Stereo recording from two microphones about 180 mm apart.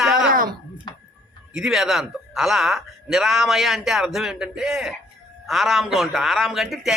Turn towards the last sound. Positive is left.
turn(degrees=0)  # may be behind; listen again after turning